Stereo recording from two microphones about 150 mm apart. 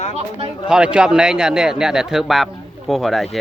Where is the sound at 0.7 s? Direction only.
5° right (ahead or behind).